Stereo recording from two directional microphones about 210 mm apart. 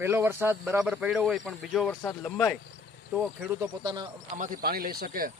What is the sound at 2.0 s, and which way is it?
Speech, 15° left (ahead or behind).